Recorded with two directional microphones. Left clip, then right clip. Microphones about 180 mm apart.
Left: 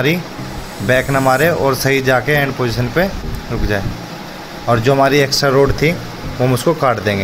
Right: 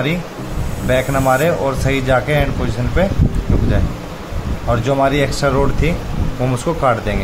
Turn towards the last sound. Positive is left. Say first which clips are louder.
# left 2 dB
turn(degrees=15)  # may be behind; listen again after turning